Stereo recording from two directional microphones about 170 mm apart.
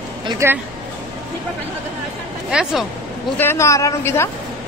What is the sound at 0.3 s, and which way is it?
Speech, 15° right (ahead or behind).